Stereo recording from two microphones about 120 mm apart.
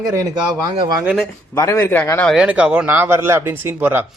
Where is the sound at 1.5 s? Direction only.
20° left (ahead or behind).